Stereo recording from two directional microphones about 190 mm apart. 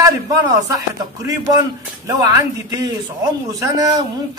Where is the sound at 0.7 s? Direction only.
15° right (ahead or behind).